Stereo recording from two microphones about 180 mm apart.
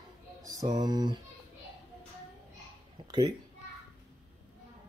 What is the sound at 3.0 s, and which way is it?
Speech, 25° right (ahead or behind).